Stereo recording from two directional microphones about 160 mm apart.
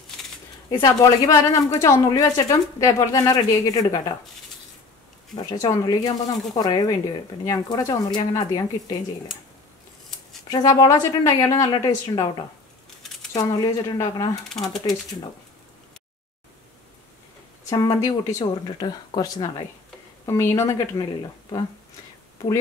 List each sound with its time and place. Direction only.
0.7 s speech: 25° left (ahead or behind)
5.3 s speech: 20° left (ahead or behind)
10.5 s speech: 20° left (ahead or behind)
13.3 s speech: 25° left (ahead or behind)
17.6 s speech: 20° left (ahead or behind)